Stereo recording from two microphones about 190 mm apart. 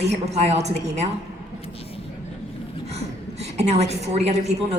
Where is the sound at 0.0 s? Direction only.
35° right (ahead or behind).